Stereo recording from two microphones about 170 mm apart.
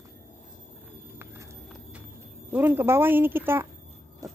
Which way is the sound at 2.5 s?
10° right (ahead or behind).